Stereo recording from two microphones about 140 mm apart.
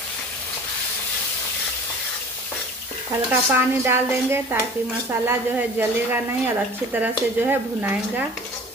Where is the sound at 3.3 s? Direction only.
15° right (ahead or behind).